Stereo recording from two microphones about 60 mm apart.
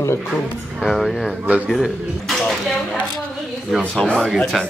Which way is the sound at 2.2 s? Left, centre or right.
Centre.